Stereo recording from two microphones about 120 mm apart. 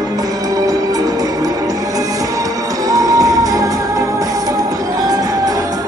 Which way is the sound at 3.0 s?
30° right (ahead or behind).